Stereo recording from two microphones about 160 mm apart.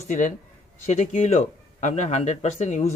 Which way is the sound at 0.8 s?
45° left (ahead or behind).